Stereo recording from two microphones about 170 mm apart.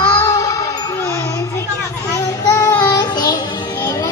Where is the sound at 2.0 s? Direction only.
20° left (ahead or behind).